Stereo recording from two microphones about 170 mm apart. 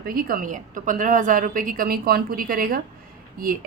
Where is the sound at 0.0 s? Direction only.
55° right (ahead or behind).